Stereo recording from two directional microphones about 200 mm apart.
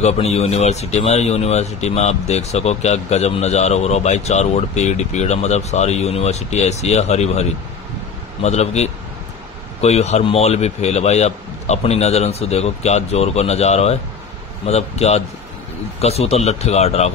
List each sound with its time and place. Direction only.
0.0 s a man's voice: 35° left (ahead or behind)